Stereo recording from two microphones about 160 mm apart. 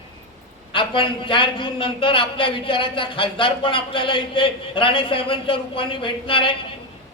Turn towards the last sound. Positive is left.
turn(degrees=30)  # may be behind; listen again after turning